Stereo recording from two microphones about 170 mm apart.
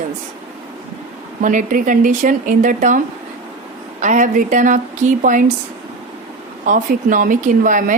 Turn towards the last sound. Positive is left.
turn(degrees=-50)  # may be behind; listen again after turning